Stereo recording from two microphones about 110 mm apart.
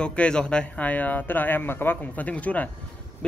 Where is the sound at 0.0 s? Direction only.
10° left (ahead or behind).